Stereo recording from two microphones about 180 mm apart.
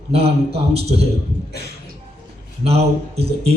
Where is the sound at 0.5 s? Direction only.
35° right (ahead or behind).